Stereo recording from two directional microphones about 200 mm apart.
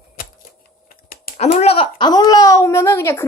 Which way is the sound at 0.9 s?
45° left (ahead or behind).